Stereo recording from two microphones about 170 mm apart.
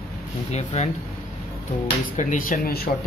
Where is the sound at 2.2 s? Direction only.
50° left (ahead or behind).